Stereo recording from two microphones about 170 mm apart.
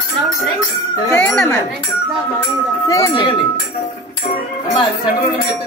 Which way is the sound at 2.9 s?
20° left (ahead or behind).